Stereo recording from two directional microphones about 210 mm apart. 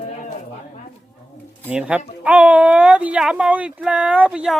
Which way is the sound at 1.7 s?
5° right (ahead or behind).